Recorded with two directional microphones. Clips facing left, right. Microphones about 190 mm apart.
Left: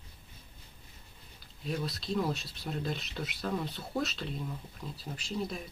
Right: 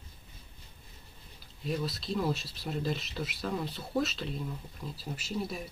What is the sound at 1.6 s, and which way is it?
Speech, centre (ahead or behind).